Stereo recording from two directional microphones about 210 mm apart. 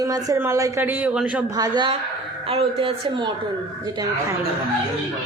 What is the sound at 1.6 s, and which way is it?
Speech, 20° right (ahead or behind).